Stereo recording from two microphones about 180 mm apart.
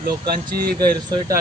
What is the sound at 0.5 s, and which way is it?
Speech, 60° right (ahead or behind).